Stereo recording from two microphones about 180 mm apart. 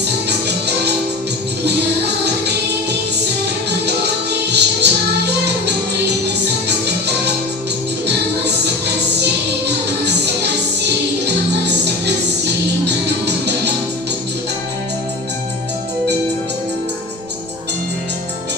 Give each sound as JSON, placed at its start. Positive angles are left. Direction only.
{"t": 0.3, "sound": "music", "side_deg": -65}
{"t": 3.7, "sound": "music", "side_deg": -65}
{"t": 8.0, "sound": "music", "side_deg": -70}
{"t": 12.8, "sound": "music", "side_deg": -70}